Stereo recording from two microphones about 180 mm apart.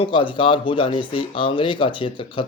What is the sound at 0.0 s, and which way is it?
Speech, 30° left (ahead or behind).